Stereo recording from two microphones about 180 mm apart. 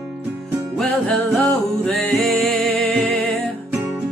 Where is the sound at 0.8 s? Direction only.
Centre (ahead or behind).